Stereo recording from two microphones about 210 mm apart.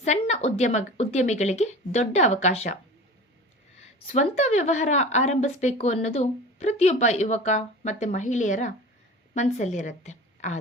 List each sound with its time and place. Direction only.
0.0 s speech: 35° left (ahead or behind)
4.1 s a woman's voice: 35° left (ahead or behind)